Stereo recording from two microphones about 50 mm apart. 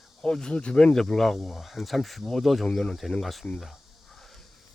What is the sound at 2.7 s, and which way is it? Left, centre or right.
Speech, centre.